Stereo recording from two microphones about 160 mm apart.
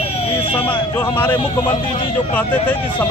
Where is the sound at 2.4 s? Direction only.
10° left (ahead or behind).